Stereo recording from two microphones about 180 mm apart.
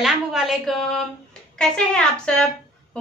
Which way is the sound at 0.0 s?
Centre (ahead or behind).